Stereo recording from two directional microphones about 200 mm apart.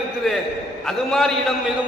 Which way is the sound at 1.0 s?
Centre (ahead or behind).